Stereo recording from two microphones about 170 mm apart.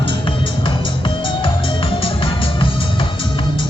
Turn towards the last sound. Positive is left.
turn(degrees=30)  # may be behind; listen again after turning